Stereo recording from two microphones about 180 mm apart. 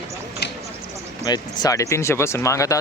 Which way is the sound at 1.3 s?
20° left (ahead or behind).